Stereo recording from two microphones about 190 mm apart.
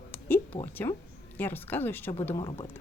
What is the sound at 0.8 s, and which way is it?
A woman's voice, 15° left (ahead or behind).